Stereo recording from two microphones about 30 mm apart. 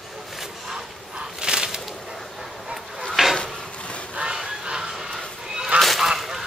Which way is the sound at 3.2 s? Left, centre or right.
Centre.